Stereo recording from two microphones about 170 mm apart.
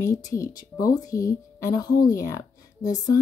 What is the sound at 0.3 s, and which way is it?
A woman's voice, 20° left (ahead or behind).